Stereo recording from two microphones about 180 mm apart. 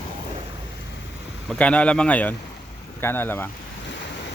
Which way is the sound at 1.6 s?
5° left (ahead or behind).